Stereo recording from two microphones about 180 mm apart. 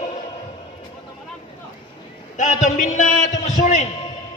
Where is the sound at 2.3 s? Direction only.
40° left (ahead or behind).